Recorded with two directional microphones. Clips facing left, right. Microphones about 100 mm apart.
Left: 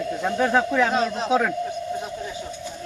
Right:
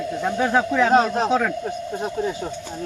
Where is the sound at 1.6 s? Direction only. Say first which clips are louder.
Right 2 dB; 50° right (ahead or behind).